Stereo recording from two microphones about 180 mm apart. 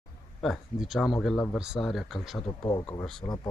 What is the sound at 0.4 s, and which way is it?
Speech, centre (ahead or behind).